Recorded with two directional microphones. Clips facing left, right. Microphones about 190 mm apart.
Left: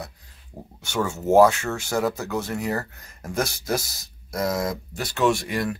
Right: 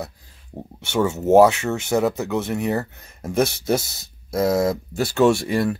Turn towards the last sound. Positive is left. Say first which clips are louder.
# right 5 dB
turn(degrees=-30)  # may be behind; listen again after turning